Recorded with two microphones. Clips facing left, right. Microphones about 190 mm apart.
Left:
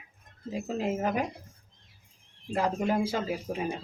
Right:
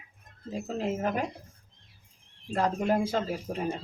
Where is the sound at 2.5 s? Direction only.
10° left (ahead or behind).